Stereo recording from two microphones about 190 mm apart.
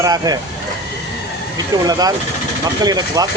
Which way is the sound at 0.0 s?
20° right (ahead or behind).